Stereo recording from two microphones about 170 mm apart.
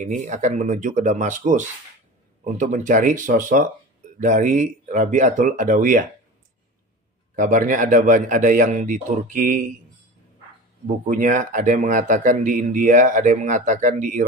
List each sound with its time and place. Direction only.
0.0 s a man's voice: 45° right (ahead or behind)
7.3 s a man's voice: 50° right (ahead or behind)
11.1 s a man's voice: 50° right (ahead or behind)